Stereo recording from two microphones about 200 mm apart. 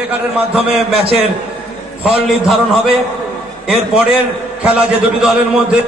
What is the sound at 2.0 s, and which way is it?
Speech, 5° right (ahead or behind).